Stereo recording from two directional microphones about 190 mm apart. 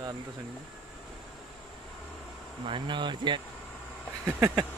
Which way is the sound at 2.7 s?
25° right (ahead or behind).